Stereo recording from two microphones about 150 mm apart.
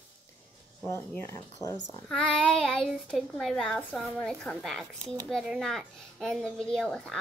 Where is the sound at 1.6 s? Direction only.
15° left (ahead or behind).